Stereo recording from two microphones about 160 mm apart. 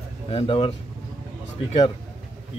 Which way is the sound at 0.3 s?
35° left (ahead or behind).